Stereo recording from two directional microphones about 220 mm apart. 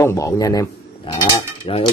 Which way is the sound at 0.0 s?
15° left (ahead or behind).